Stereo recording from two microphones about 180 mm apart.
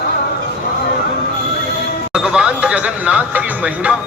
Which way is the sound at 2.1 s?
5° right (ahead or behind).